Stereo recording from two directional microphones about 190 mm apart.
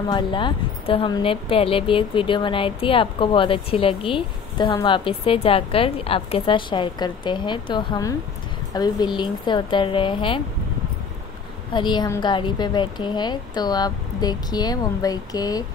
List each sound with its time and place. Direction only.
0.1 s speech: 25° left (ahead or behind)
11.7 s speech: 25° left (ahead or behind)